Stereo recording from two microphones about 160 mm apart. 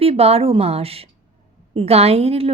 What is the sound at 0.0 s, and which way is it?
A woman's voice, 40° right (ahead or behind).